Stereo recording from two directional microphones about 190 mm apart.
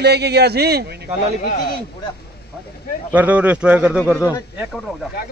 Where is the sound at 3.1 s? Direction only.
10° right (ahead or behind).